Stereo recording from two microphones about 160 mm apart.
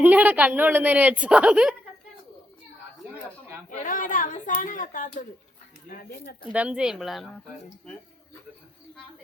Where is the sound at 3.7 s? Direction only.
55° left (ahead or behind).